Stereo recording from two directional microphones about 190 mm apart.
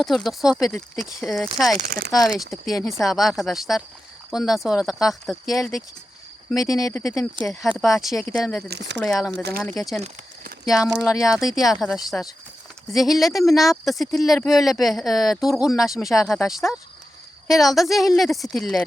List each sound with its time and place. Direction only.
0.0 s speech: centre (ahead or behind)
1.7 s speech: 50° right (ahead or behind)
2.0 s speech: centre (ahead or behind)
6.6 s speech: 20° left (ahead or behind)
8.6 s speech: 60° right (ahead or behind)
9.0 s speech: centre (ahead or behind)
9.3 s speech: 55° right (ahead or behind)
9.7 s speech: centre (ahead or behind)